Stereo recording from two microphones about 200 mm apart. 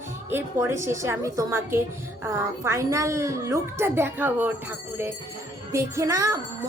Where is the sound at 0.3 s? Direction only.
10° right (ahead or behind).